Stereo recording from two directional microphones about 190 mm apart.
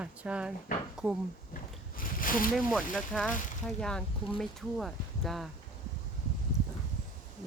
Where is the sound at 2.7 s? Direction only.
Centre (ahead or behind).